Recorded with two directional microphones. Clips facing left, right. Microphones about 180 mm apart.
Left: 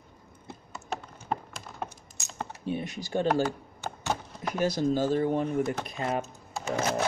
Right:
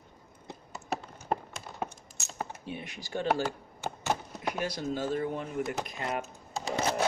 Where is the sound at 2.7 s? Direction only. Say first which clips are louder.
Left 10 dB; 40° left (ahead or behind).